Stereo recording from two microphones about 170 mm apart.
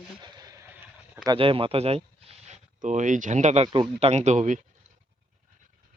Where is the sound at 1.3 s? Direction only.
30° right (ahead or behind).